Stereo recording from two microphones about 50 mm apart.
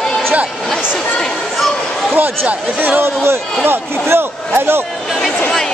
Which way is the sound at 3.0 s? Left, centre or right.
Right.